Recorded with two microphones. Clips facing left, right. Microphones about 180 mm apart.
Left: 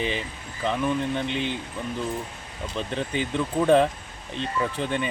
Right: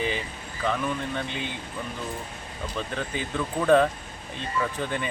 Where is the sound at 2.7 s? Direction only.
30° left (ahead or behind).